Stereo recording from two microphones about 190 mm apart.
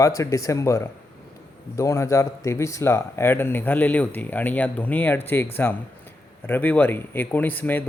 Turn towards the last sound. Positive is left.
turn(degrees=10)  # may be behind; listen again after turning